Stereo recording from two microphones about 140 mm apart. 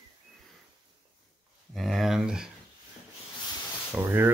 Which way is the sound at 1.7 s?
Centre (ahead or behind).